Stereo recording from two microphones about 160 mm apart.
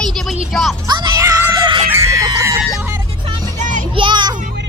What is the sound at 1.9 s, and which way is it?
Chicken, 20° right (ahead or behind).